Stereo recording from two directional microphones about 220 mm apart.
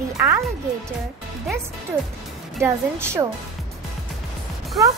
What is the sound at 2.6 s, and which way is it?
Speech, 10° right (ahead or behind).